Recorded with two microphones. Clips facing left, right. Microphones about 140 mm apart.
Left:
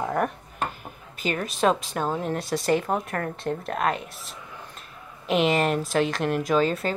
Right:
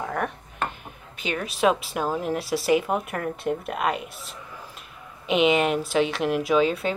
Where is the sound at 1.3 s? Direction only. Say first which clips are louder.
Right 1 dB; 5° right (ahead or behind).